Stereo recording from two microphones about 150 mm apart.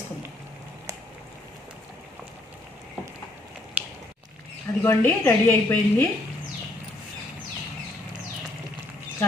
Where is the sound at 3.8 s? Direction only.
10° right (ahead or behind).